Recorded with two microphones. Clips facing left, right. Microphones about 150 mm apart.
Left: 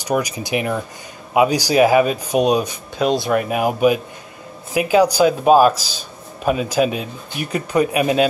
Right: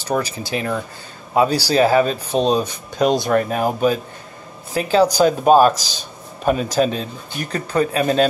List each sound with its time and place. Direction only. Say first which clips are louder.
0.0 s speech: left 1 dB; 15° left (ahead or behind)